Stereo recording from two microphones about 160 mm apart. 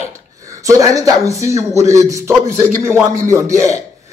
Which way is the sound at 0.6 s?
20° right (ahead or behind).